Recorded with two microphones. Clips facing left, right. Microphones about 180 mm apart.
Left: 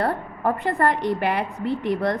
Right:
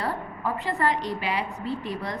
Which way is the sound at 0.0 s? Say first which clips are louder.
Left 6 dB; 60° left (ahead or behind).